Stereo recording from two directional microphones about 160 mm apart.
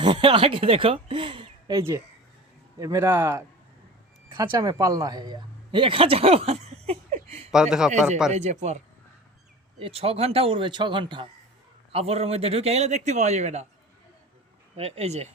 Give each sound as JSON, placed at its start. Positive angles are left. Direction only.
{"t": 0.0, "sound": "speech", "side_deg": -30}
{"t": 2.7, "sound": "a man's voice", "side_deg": -20}
{"t": 4.4, "sound": "speech", "side_deg": -25}
{"t": 7.5, "sound": "speech", "side_deg": -5}
{"t": 8.3, "sound": "a man's voice", "side_deg": -45}
{"t": 14.8, "sound": "a man's voice", "side_deg": -40}